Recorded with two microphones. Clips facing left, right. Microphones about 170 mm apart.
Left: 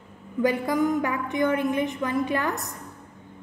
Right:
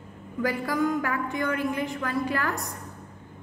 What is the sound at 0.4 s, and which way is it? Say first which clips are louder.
A woman's voice: left 3 dB; 20° left (ahead or behind).